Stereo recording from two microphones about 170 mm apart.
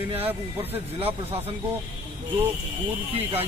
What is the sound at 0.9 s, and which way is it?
Speech, 35° right (ahead or behind).